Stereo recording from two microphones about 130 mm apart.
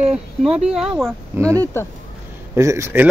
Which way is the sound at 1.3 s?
25° right (ahead or behind).